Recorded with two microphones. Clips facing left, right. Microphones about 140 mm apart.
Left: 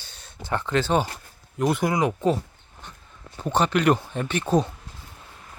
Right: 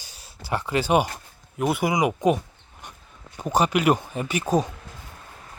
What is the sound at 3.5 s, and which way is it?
Speech, 10° right (ahead or behind).